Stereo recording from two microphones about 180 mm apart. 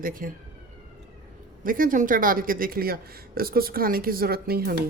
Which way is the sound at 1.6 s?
50° right (ahead or behind).